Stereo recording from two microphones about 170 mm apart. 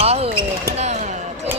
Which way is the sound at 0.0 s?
40° right (ahead or behind).